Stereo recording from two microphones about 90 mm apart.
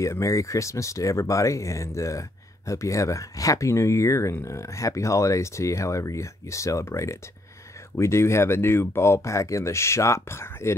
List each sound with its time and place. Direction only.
0.0 s speech: 35° left (ahead or behind)